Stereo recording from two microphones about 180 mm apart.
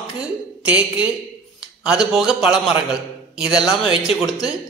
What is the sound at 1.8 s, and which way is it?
A man's voice, 5° right (ahead or behind).